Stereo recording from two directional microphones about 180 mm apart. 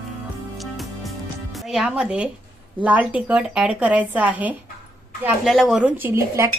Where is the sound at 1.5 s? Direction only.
Centre (ahead or behind).